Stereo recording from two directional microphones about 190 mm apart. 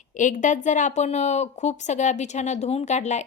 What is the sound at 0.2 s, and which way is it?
A woman's voice, 40° left (ahead or behind).